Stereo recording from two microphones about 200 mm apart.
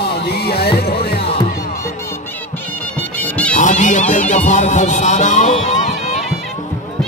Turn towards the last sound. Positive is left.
turn(degrees=40)  # may be behind; listen again after turning